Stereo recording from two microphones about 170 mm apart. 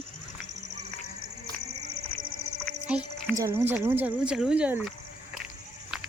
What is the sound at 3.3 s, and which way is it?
Speech, 15° right (ahead or behind).